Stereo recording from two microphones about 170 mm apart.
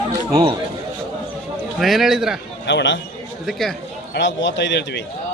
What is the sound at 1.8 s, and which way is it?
Speech, centre (ahead or behind).